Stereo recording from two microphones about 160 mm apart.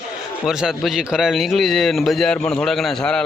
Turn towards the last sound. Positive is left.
turn(degrees=5)  # may be behind; listen again after turning